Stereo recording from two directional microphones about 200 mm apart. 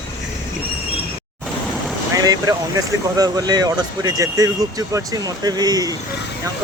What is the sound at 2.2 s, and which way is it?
Speech, 20° right (ahead or behind).